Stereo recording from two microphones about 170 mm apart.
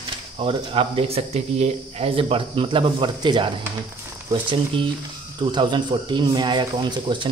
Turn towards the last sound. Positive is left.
turn(degrees=-25)  # may be behind; listen again after turning